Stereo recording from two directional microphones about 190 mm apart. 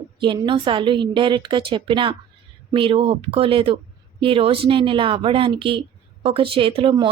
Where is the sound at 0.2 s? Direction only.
25° right (ahead or behind).